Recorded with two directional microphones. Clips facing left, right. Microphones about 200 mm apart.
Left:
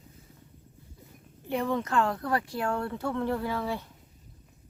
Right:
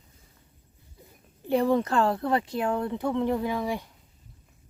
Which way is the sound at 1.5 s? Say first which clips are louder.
Right 6 dB; 35° right (ahead or behind).